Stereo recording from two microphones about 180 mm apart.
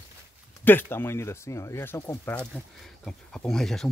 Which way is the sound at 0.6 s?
10° left (ahead or behind).